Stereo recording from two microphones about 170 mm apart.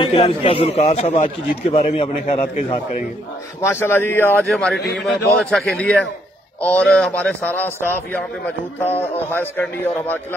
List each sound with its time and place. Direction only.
0.0 s a man's voice: 35° left (ahead or behind)
3.6 s a man's voice: 15° left (ahead or behind)
4.7 s a man's voice: 90° left
5.0 s a man's voice: centre (ahead or behind)